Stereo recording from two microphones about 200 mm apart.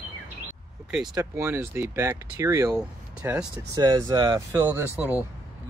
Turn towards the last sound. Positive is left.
turn(degrees=-10)  # may be behind; listen again after turning